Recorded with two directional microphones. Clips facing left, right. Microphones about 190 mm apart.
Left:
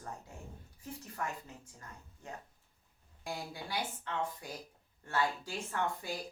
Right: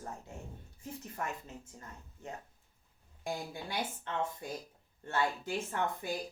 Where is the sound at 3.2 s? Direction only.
25° right (ahead or behind).